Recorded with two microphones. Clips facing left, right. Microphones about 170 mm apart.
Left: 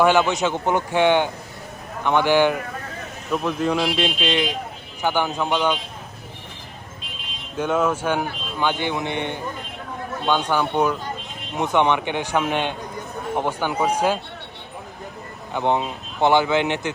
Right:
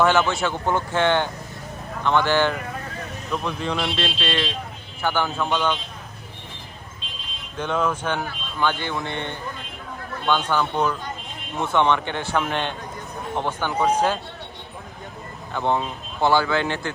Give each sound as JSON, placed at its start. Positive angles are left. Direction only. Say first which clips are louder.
{"t": 0.0, "sound": "a man's voice", "louder": "left 2 dB", "side_deg": 15}
{"t": 4.0, "sound": "speech", "louder": "left 3 dB", "side_deg": 15}
{"t": 7.5, "sound": "speech", "louder": "left 3 dB", "side_deg": 5}
{"t": 15.5, "sound": "speech", "louder": "left 2 dB", "side_deg": 15}